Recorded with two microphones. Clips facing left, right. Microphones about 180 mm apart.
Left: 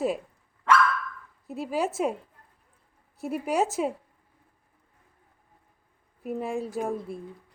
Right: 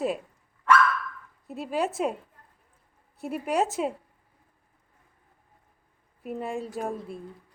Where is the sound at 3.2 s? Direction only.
5° left (ahead or behind).